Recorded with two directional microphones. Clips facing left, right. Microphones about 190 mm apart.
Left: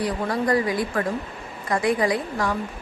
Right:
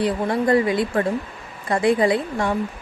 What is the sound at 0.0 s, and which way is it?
A woman's voice, 25° right (ahead or behind).